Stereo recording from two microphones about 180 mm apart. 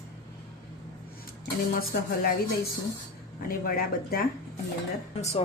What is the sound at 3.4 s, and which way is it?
Speech, 55° left (ahead or behind).